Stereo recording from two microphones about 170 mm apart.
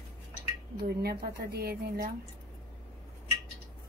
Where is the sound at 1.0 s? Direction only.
65° right (ahead or behind).